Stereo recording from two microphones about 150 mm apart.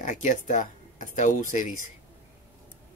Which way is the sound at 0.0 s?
55° left (ahead or behind).